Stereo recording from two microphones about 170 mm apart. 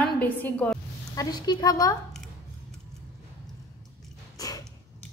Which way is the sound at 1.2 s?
25° left (ahead or behind).